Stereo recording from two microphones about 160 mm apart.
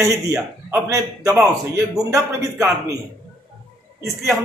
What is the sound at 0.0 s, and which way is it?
A man's voice, 20° right (ahead or behind).